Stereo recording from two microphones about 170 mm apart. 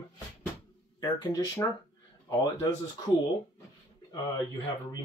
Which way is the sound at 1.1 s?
25° left (ahead or behind).